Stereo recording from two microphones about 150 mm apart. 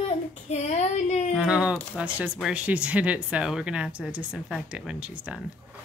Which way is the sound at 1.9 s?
10° right (ahead or behind).